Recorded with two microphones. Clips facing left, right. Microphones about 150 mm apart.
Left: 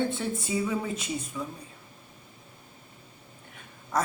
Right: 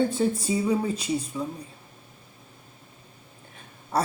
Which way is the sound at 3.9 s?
30° right (ahead or behind).